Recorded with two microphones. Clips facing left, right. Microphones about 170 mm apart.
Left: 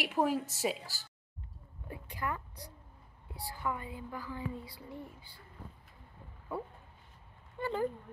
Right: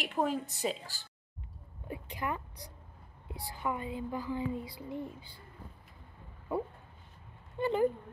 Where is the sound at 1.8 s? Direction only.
20° right (ahead or behind).